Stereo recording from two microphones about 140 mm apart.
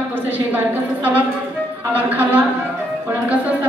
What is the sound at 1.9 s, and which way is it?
Speech, 15° right (ahead or behind).